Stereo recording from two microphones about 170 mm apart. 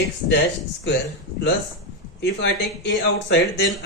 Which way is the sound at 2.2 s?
90° left.